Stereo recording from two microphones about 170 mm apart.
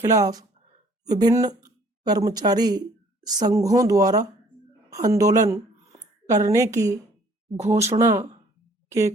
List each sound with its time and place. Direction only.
0.0 s a woman's voice: 20° right (ahead or behind)